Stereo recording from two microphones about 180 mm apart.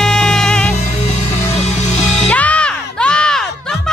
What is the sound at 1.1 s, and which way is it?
Music, 35° left (ahead or behind).